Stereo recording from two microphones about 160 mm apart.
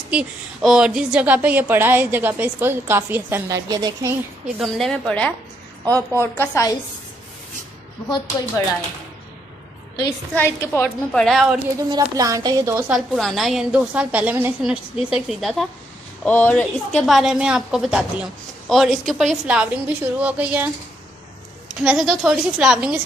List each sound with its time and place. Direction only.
0.1 s a woman's voice: 5° right (ahead or behind); by 4.1 s 20° right (ahead or behind)
4.6 s a woman's voice: centre (ahead or behind)
5.9 s a woman's voice: 20° right (ahead or behind)
6.3 s a woman's voice: 15° left (ahead or behind)
9.9 s a woman's voice: 15° left (ahead or behind)
11.1 s a woman's voice: centre (ahead or behind)
11.9 s a woman's voice: 20° right (ahead or behind)
12.9 s a woman's voice: centre (ahead or behind)
21.8 s a woman's voice: centre (ahead or behind)